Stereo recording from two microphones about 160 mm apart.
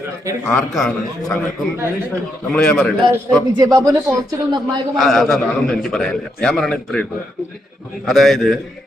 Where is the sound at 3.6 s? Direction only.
25° right (ahead or behind).